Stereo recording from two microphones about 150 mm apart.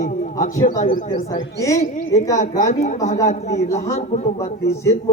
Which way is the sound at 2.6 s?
60° left (ahead or behind).